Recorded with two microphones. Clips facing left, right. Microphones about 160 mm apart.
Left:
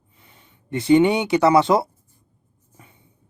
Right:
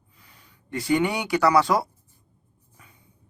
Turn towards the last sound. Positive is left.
turn(degrees=25)  # may be behind; listen again after turning